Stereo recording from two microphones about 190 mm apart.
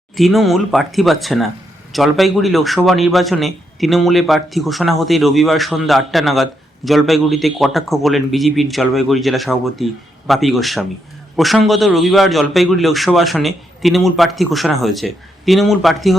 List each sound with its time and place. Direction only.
0.2 s a man's voice: centre (ahead or behind)